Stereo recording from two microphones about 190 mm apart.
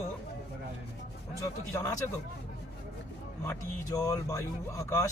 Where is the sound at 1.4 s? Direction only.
15° left (ahead or behind).